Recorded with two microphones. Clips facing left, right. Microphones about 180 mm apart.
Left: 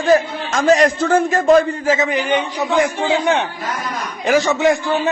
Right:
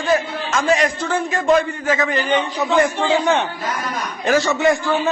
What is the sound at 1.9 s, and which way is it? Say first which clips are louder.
A man's voice: left 1 dB; 20° left (ahead or behind).